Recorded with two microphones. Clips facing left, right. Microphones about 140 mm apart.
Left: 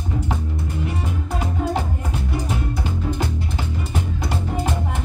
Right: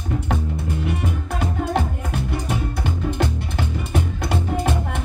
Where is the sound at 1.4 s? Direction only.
60° right (ahead or behind).